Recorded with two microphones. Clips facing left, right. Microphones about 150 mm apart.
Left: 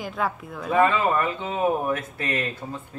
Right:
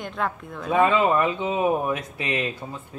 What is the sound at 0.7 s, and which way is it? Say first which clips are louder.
Speech: right 1 dB; 20° right (ahead or behind).